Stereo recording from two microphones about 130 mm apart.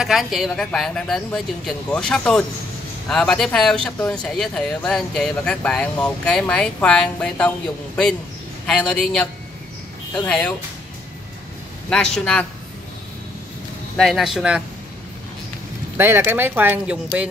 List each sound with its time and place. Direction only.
0.0 s a woman's voice: centre (ahead or behind)
11.9 s a woman's voice: 5° left (ahead or behind)
13.9 s speech: centre (ahead or behind)
16.0 s speech: 15° right (ahead or behind)